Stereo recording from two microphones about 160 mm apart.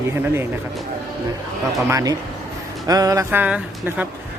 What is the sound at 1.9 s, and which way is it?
Speech, 20° right (ahead or behind).